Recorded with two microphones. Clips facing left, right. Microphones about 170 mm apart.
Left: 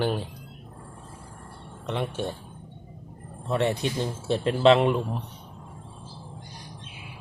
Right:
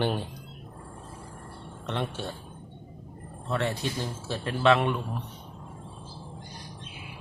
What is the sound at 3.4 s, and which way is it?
A man's voice, 20° left (ahead or behind).